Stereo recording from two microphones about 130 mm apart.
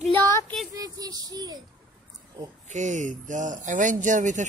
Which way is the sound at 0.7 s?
30° right (ahead or behind).